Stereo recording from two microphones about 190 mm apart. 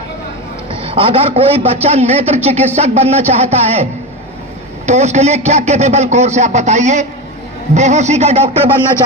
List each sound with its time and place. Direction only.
0.8 s a man's voice: 30° right (ahead or behind)
4.9 s a man's voice: 35° right (ahead or behind)